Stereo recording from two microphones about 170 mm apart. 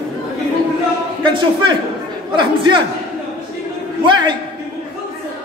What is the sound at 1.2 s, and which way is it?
Speech, 30° right (ahead or behind).